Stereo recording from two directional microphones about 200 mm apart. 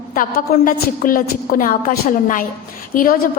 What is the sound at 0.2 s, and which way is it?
A woman's voice, 45° left (ahead or behind).